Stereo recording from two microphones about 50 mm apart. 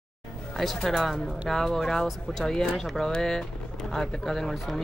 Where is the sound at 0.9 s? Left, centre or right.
Centre.